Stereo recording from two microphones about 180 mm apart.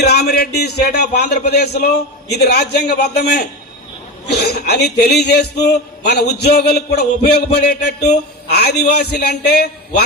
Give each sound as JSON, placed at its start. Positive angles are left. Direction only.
{"t": 0.0, "sound": "a man's voice", "side_deg": 65}